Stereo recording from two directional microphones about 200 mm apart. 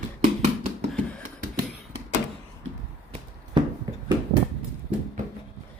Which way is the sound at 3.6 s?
25° right (ahead or behind).